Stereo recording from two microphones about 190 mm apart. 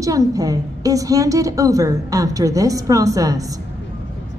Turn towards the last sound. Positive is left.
turn(degrees=-20)  # may be behind; listen again after turning